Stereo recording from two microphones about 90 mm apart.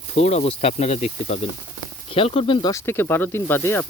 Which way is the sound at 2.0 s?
90° left.